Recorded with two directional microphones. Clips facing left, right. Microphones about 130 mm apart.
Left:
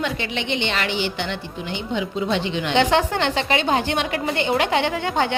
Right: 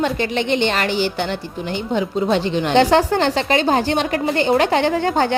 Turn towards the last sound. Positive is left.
turn(degrees=-40)  # may be behind; listen again after turning